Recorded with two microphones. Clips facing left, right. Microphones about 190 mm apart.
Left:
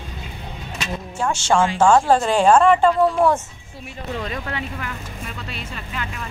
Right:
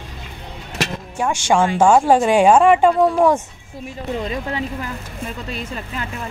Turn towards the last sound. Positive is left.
turn(degrees=-35)  # may be behind; listen again after turning